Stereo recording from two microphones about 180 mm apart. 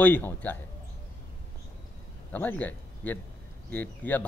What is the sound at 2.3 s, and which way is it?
A man's voice, 10° left (ahead or behind).